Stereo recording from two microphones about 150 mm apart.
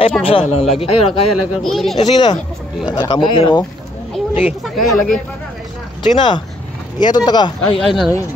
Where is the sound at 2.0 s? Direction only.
30° left (ahead or behind).